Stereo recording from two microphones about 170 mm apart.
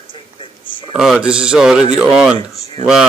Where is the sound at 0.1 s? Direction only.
30° left (ahead or behind).